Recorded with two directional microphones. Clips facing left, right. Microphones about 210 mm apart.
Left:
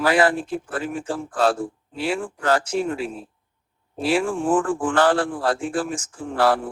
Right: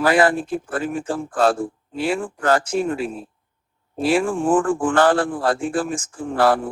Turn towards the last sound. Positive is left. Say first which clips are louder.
# right 2 dB
turn(degrees=-50)  # may be behind; listen again after turning